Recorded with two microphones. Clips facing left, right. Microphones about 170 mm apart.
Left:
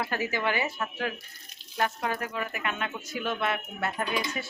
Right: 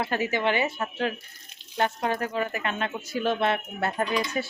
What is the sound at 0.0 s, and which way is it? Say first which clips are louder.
Speech: right 4 dB; 25° right (ahead or behind).